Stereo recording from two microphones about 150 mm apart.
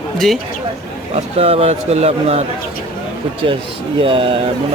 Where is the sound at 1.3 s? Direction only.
40° right (ahead or behind).